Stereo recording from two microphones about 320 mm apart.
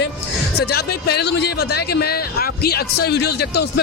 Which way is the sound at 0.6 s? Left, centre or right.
Left.